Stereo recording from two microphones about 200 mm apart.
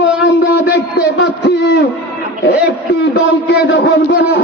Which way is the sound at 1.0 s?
60° left (ahead or behind).